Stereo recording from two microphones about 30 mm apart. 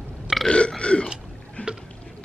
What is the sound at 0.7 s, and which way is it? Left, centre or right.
Burping, left.